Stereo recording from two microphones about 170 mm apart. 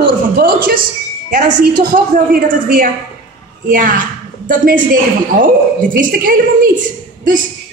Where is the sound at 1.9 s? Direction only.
55° right (ahead or behind).